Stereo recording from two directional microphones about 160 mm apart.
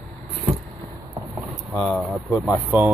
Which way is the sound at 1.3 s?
Centre (ahead or behind).